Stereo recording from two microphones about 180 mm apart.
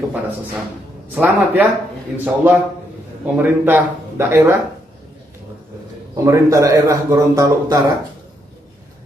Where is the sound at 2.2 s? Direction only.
10° right (ahead or behind).